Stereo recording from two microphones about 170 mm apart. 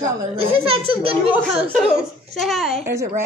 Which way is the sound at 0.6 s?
35° right (ahead or behind).